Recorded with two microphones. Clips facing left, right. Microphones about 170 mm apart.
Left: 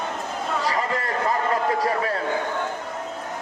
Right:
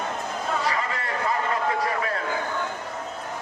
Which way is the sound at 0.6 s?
40° left (ahead or behind).